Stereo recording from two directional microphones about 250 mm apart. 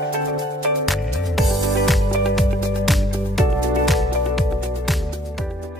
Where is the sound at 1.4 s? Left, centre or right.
Centre.